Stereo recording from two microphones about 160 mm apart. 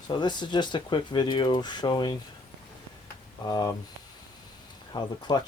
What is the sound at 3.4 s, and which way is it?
Speech, 25° left (ahead or behind).